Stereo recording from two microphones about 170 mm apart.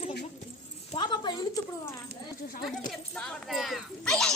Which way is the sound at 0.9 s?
25° left (ahead or behind).